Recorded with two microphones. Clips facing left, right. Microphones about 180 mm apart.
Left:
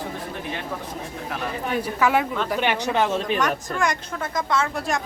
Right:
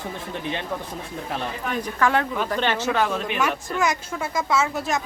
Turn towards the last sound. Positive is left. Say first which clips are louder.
# right 1 dB
turn(degrees=-5)  # may be behind; listen again after turning